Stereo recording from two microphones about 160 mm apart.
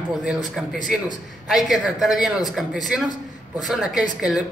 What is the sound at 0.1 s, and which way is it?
Speech, 5° right (ahead or behind).